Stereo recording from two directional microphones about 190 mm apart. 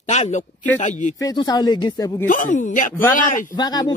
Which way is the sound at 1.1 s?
20° left (ahead or behind).